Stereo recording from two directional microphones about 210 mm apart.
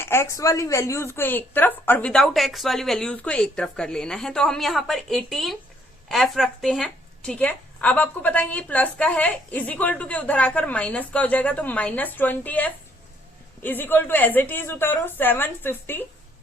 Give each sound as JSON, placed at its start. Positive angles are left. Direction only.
{"t": 0.0, "sound": "a woman's voice", "side_deg": 10}